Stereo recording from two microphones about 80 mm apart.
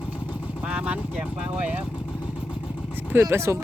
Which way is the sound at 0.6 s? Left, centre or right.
Centre.